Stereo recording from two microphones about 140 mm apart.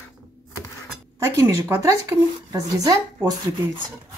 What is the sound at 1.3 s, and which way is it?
Speech, 20° right (ahead or behind).